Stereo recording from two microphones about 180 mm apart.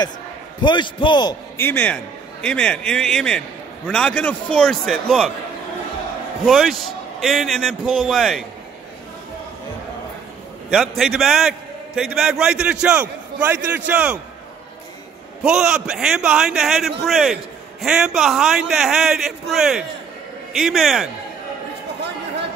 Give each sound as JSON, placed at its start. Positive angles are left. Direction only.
{"t": 0.6, "sound": "a man's voice", "side_deg": 25}
{"t": 1.6, "sound": "a man's voice", "side_deg": 10}
{"t": 6.4, "sound": "a man's voice", "side_deg": 0}
{"t": 10.7, "sound": "a man's voice", "side_deg": 0}
{"t": 15.4, "sound": "a man's voice", "side_deg": -5}